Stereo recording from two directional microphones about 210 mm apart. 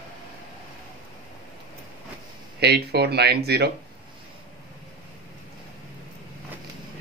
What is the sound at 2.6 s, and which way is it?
Speech, 50° right (ahead or behind).